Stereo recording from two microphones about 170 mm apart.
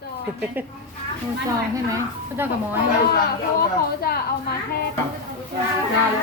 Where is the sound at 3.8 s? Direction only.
65° left (ahead or behind).